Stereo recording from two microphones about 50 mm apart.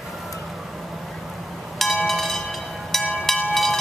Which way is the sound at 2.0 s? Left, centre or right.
Centre.